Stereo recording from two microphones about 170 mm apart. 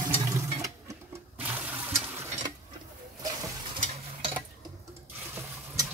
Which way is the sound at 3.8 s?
40° right (ahead or behind).